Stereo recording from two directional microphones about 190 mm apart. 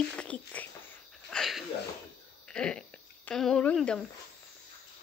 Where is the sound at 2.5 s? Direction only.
5° left (ahead or behind).